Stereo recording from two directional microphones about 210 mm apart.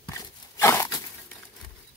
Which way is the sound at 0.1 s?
15° left (ahead or behind).